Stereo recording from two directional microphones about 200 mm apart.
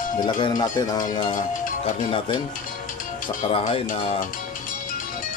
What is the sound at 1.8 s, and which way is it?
Speech, 30° left (ahead or behind).